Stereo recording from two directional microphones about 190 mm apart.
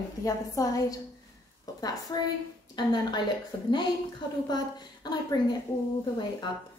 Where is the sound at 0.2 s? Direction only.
15° left (ahead or behind).